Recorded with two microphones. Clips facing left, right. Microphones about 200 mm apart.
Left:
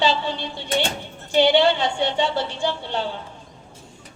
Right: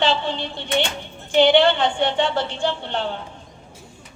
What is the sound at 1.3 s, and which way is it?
A woman's voice, 55° right (ahead or behind).